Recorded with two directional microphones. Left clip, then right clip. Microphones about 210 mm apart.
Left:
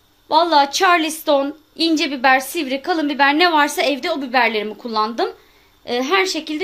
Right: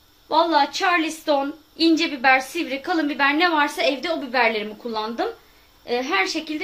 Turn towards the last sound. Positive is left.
turn(degrees=50)  # may be behind; listen again after turning